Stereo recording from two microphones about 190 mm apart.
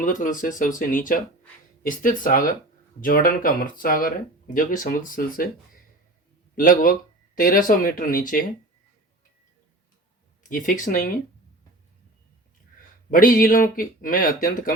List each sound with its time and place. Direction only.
0.0 s speech: 45° left (ahead or behind)
6.6 s speech: 50° left (ahead or behind)
10.5 s speech: 45° left (ahead or behind)
13.1 s speech: 45° left (ahead or behind)